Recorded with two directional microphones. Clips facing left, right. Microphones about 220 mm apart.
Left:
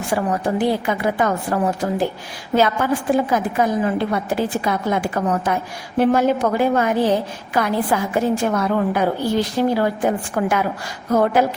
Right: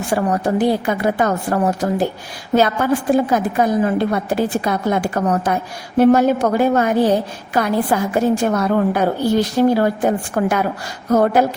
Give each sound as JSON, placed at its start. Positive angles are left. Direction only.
{"t": 0.1, "sound": "a woman's voice", "side_deg": -40}